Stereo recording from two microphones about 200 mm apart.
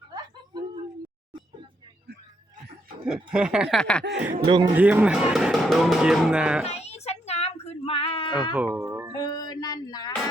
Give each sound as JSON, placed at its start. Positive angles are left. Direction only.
{"t": 3.3, "sound": "speech", "side_deg": -5}
{"t": 4.1, "sound": "speech", "side_deg": -5}
{"t": 4.4, "sound": "a man's voice", "side_deg": -25}
{"t": 4.8, "sound": "speech", "side_deg": -10}
{"t": 6.7, "sound": "a sound", "side_deg": 30}
{"t": 8.5, "sound": "music", "side_deg": -5}
{"t": 9.1, "sound": "a sound", "side_deg": 20}